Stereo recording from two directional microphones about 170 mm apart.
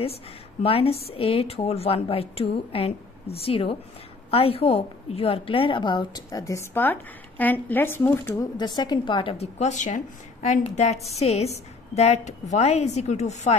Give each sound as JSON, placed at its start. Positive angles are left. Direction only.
{"t": 0.6, "sound": "a woman's voice", "side_deg": 35}
{"t": 8.5, "sound": "a woman's voice", "side_deg": 25}